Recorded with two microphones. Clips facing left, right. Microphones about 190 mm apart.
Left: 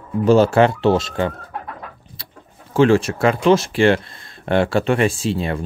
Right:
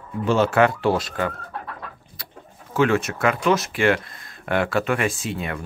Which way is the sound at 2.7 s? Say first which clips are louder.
Left 6 dB; 30° left (ahead or behind).